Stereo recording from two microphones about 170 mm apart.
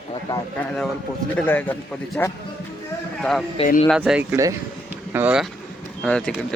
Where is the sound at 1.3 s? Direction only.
10° left (ahead or behind).